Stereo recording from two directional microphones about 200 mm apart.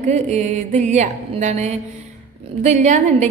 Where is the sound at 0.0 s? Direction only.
35° right (ahead or behind).